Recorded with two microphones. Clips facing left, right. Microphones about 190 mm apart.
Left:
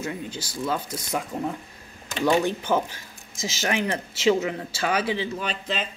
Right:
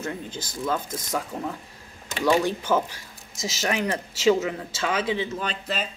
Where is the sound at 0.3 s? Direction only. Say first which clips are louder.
Even; 50° right (ahead or behind).